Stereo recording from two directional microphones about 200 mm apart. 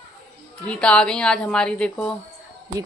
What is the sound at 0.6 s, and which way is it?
A woman's voice, 5° left (ahead or behind).